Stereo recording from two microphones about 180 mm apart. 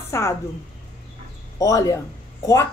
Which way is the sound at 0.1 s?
15° left (ahead or behind).